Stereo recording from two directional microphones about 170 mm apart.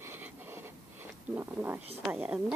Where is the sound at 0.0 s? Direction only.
15° right (ahead or behind).